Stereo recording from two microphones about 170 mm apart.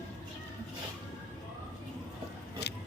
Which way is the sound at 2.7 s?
90° left.